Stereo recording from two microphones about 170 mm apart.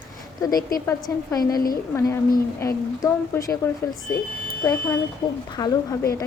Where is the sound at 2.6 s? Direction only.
20° left (ahead or behind).